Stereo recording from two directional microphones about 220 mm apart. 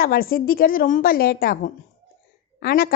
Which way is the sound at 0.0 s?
40° left (ahead or behind).